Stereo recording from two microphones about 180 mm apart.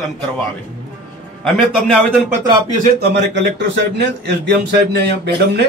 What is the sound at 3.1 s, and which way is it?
A man's voice, 80° right.